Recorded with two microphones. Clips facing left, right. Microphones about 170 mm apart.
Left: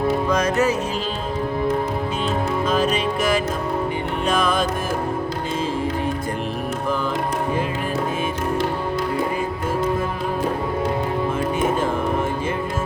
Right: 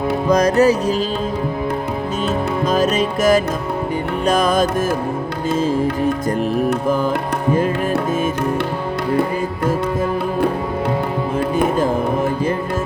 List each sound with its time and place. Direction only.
0.3 s music: 35° right (ahead or behind)
2.6 s music: 40° right (ahead or behind)